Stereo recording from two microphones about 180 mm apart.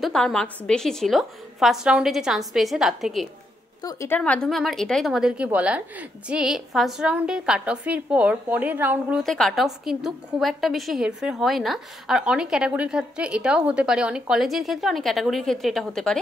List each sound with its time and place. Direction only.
0.0 s a woman's voice: 5° left (ahead or behind)
3.8 s a woman's voice: 15° left (ahead or behind)
4.2 s a woman's voice: 5° left (ahead or behind)
9.2 s a woman's voice: centre (ahead or behind)